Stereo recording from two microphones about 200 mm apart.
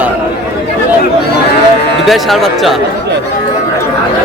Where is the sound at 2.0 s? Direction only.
Centre (ahead or behind).